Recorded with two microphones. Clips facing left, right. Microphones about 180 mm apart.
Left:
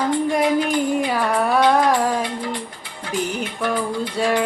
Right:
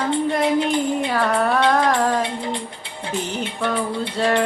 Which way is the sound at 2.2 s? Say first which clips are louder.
Even; 25° right (ahead or behind).